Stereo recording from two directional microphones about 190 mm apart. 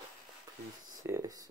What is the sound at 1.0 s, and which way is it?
Speech, 15° right (ahead or behind).